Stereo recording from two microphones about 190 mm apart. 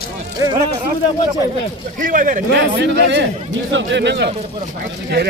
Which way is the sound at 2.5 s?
65° right (ahead or behind).